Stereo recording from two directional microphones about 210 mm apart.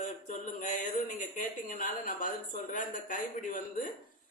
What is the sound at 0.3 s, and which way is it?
Speech, 35° left (ahead or behind).